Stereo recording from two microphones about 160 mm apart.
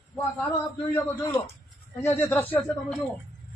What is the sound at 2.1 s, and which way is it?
Speech, 15° left (ahead or behind).